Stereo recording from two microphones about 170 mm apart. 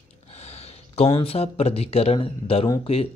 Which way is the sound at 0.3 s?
40° left (ahead or behind).